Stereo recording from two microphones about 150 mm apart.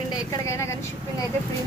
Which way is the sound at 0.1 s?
20° left (ahead or behind).